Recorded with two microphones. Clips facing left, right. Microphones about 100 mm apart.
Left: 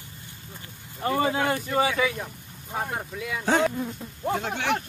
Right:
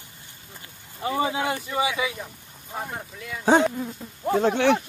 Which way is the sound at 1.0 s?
10° right (ahead or behind).